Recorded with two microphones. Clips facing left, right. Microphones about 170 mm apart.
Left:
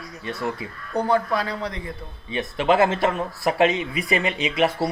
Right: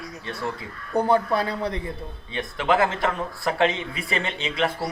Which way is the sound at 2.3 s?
25° left (ahead or behind).